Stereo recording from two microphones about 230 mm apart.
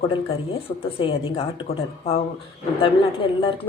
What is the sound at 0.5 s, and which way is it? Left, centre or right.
Speech, left.